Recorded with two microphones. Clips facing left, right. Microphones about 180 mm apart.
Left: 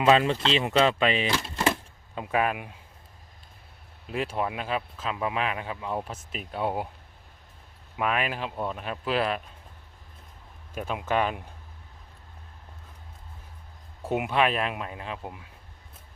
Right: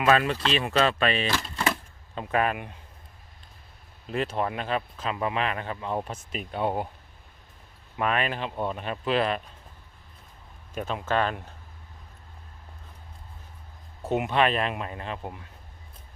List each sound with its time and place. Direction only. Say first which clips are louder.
0.0 s speech: left 2 dB; 20° left (ahead or behind); by 2.8 s 5° left (ahead or behind)
4.0 s speech: right 1 dB; 5° left (ahead or behind)
7.9 s speech: right 1 dB; 5° left (ahead or behind)
10.8 s speech: even; 10° left (ahead or behind)
14.0 s speech: right 1 dB; 10° left (ahead or behind)